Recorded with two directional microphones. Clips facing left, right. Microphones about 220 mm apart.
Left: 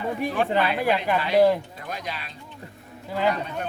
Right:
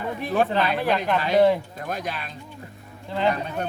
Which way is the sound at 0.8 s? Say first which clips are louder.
Even; 10° left (ahead or behind).